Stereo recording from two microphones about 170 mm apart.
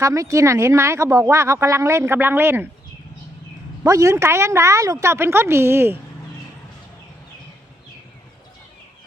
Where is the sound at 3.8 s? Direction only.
20° right (ahead or behind).